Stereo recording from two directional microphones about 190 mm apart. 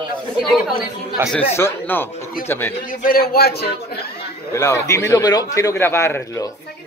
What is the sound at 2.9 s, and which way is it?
Speech, 50° left (ahead or behind).